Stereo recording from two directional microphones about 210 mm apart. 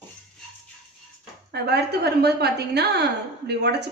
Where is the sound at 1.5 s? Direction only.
50° right (ahead or behind).